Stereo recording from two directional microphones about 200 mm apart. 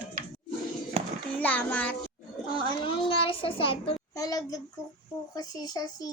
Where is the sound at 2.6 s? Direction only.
25° left (ahead or behind).